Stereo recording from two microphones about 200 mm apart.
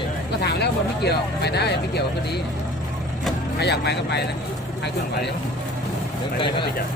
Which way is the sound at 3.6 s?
55° left (ahead or behind).